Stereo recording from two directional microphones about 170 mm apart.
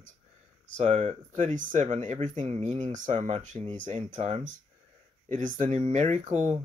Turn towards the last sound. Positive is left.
turn(degrees=-45)  # may be behind; listen again after turning